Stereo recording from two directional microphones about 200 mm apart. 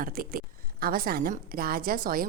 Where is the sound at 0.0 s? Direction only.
45° right (ahead or behind).